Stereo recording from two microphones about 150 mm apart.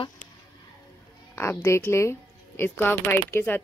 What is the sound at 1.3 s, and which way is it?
Speech, 15° left (ahead or behind).